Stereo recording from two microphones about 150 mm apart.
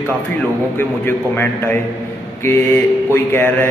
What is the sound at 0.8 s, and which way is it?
Speech, 15° left (ahead or behind).